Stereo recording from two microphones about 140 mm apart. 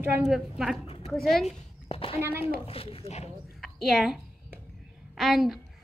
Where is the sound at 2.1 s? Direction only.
15° right (ahead or behind).